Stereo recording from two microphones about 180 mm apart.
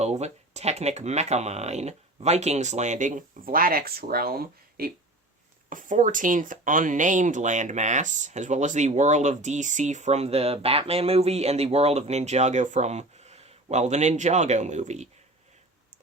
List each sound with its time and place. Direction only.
0.0 s speech: 40° right (ahead or behind)